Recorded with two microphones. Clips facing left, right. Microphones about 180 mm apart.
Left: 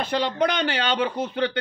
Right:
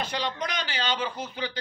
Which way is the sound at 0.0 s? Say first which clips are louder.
Left 8 dB; 55° left (ahead or behind).